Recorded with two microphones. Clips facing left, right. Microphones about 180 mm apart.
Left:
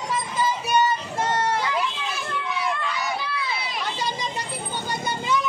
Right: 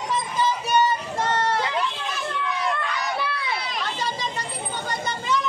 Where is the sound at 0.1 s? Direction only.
10° left (ahead or behind).